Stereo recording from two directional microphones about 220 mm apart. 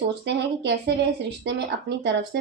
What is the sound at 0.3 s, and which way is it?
Speech, 50° right (ahead or behind).